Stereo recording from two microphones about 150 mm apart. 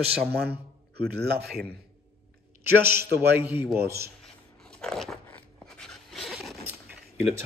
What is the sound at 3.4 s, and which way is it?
Speech, 15° right (ahead or behind).